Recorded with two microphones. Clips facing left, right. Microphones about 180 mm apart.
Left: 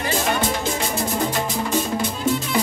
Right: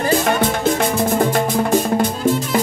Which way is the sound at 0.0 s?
55° right (ahead or behind).